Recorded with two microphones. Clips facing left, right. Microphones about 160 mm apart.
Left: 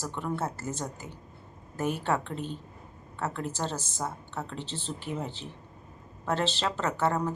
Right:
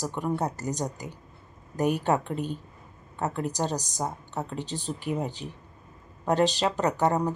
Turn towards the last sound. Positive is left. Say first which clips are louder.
# right 4 dB
turn(degrees=-15)  # may be behind; listen again after turning